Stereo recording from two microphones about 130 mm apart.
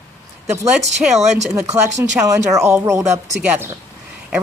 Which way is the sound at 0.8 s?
60° right (ahead or behind).